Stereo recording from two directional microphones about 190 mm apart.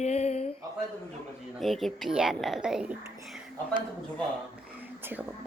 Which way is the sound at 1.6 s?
Centre (ahead or behind).